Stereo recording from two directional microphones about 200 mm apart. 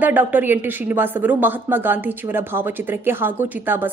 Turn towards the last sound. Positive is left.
turn(degrees=-10)  # may be behind; listen again after turning